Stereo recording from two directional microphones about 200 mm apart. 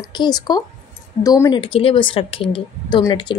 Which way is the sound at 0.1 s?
20° left (ahead or behind).